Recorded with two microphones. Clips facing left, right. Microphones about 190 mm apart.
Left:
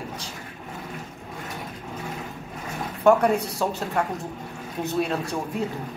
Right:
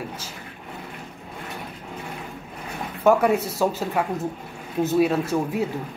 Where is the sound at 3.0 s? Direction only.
5° right (ahead or behind).